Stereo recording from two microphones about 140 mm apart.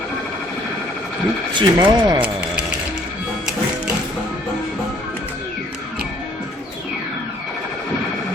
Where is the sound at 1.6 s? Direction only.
35° right (ahead or behind).